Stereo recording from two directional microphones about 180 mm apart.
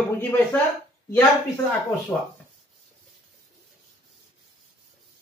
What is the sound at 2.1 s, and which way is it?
Speech, 15° left (ahead or behind).